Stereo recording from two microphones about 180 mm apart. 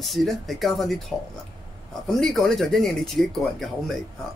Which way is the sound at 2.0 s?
Centre (ahead or behind).